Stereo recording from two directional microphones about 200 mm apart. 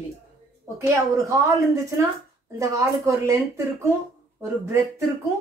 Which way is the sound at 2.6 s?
15° right (ahead or behind).